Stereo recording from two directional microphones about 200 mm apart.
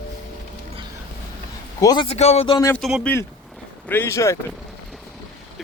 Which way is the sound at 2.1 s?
30° left (ahead or behind).